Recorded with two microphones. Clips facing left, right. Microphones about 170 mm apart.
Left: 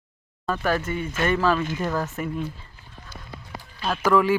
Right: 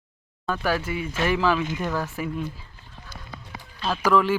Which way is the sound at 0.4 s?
Centre (ahead or behind).